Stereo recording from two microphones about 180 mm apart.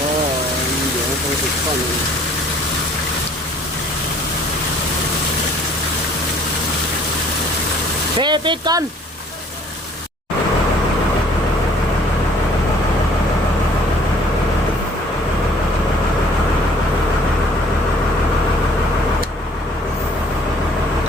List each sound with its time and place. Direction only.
8.2 s speech: 25° right (ahead or behind)